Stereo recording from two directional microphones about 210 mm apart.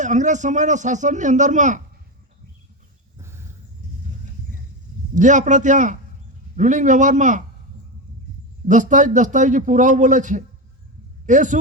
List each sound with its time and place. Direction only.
0.0 s speech: 35° right (ahead or behind)
3.2 s a sound: 10° right (ahead or behind)
5.1 s speech: 35° right (ahead or behind)
8.6 s speech: 35° right (ahead or behind)